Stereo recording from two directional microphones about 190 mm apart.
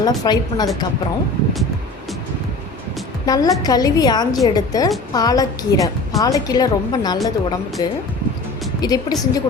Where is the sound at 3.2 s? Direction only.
20° left (ahead or behind).